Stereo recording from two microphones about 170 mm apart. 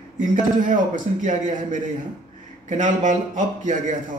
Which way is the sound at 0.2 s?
50° right (ahead or behind).